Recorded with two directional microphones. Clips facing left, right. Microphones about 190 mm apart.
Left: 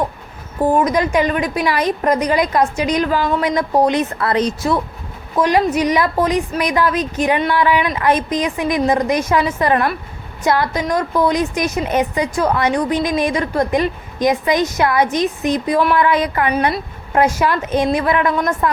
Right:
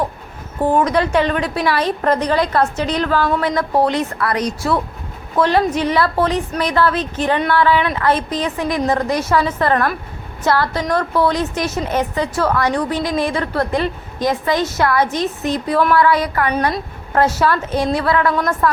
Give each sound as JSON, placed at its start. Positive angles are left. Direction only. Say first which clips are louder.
{"t": 0.6, "sound": "a woman's voice", "louder": "left 1 dB", "side_deg": 10}
{"t": 5.3, "sound": "a woman's voice", "louder": "even", "side_deg": 10}
{"t": 16.5, "sound": "a woman's voice", "louder": "left 1 dB", "side_deg": 10}